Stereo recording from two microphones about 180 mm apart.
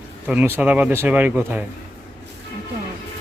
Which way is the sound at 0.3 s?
10° right (ahead or behind).